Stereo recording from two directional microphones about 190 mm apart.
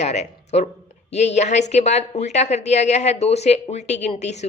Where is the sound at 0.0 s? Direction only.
35° left (ahead or behind).